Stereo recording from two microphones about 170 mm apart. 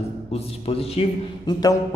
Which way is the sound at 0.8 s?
35° left (ahead or behind).